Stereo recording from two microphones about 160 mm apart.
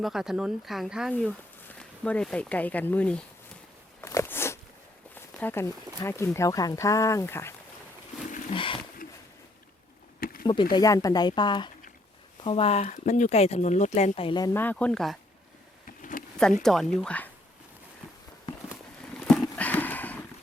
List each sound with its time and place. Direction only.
0.0 s speech: centre (ahead or behind)
4.0 s walk: 15° left (ahead or behind)
5.1 s speech: 10° left (ahead or behind)
8.3 s a sound: 55° left (ahead or behind)
8.5 s speech: 35° left (ahead or behind)
10.2 s a sound: 65° left (ahead or behind)
10.4 s speech: 30° left (ahead or behind)
14.5 s speech: 10° left (ahead or behind)
16.0 s a sound: 55° left (ahead or behind)
16.6 s speech: 5° left (ahead or behind)
19.3 s horse: 5° left (ahead or behind)